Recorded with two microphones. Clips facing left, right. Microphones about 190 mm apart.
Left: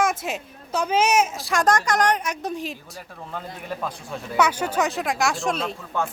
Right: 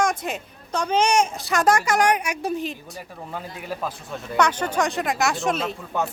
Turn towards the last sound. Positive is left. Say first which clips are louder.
# right 1 dB
turn(degrees=-15)  # may be behind; listen again after turning